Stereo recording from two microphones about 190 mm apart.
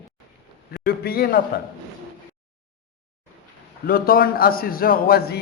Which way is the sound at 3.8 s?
50° left (ahead or behind).